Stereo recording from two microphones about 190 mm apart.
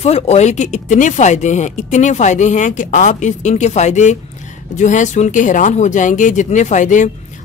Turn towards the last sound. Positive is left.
turn(degrees=40)  # may be behind; listen again after turning